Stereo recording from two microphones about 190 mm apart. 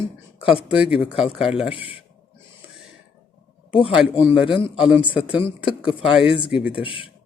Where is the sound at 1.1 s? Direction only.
5° right (ahead or behind).